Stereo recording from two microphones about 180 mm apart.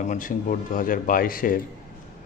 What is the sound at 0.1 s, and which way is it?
A man's voice, 50° left (ahead or behind).